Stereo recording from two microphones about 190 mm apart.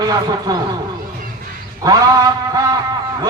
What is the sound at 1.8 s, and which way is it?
Speech, 20° right (ahead or behind).